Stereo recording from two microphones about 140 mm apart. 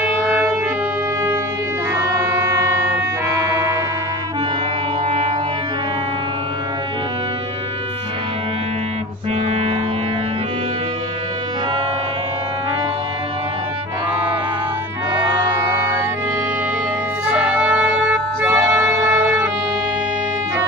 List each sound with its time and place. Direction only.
0.0 s music: 15° right (ahead or behind)
3.3 s siren: 25° right (ahead or behind)
15.2 s music: 20° right (ahead or behind)
17.3 s music: 10° right (ahead or behind)